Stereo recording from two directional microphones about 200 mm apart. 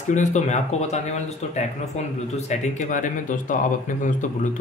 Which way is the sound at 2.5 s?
40° left (ahead or behind).